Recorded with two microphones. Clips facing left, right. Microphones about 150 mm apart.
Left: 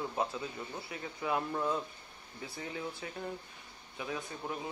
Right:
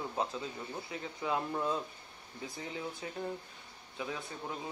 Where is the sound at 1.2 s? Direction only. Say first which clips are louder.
Left 1 dB; 20° right (ahead or behind).